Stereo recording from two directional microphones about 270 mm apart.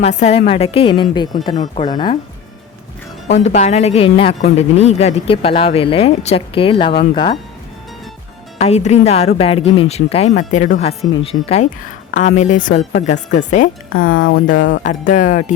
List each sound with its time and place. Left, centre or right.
0.0 s speech: left
3.4 s speech: left
8.5 s speech: left
14.2 s speech: left
14.8 s speech: left